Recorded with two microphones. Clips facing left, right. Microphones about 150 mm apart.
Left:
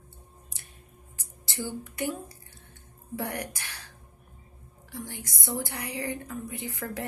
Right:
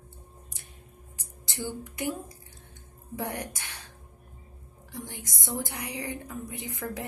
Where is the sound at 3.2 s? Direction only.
20° right (ahead or behind).